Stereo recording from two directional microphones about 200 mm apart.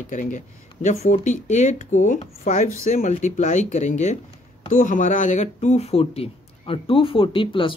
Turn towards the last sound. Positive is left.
turn(degrees=25)  # may be behind; listen again after turning